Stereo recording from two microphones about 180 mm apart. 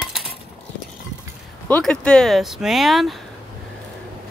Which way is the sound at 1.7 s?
5° left (ahead or behind).